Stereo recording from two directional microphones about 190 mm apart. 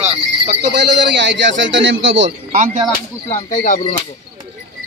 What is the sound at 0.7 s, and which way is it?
A man's voice, 65° right (ahead or behind).